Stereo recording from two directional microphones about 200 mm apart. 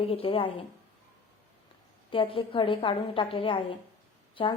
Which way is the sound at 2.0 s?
25° left (ahead or behind).